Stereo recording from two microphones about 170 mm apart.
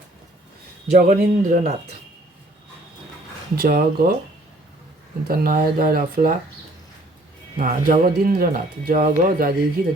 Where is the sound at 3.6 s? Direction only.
60° right (ahead or behind).